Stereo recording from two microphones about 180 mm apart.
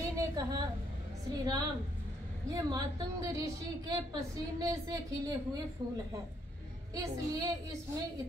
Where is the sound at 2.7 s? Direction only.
20° right (ahead or behind).